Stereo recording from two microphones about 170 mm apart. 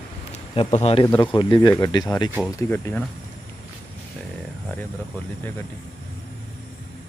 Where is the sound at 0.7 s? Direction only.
35° left (ahead or behind); by 3.0 s 10° left (ahead or behind).